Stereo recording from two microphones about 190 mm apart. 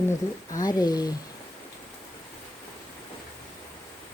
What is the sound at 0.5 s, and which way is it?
Speech, 20° left (ahead or behind).